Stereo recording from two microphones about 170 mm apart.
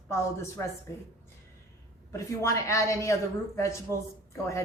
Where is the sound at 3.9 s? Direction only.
20° right (ahead or behind).